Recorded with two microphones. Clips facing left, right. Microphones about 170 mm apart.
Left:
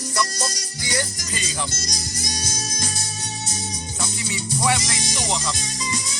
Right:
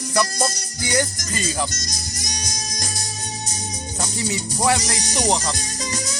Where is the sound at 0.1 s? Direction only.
55° right (ahead or behind).